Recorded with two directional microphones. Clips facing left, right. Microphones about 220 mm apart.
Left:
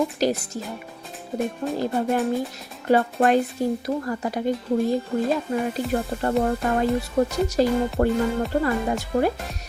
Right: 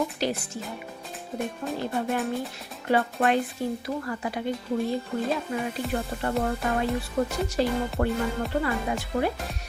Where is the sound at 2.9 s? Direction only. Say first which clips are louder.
Left 5 dB; 45° left (ahead or behind).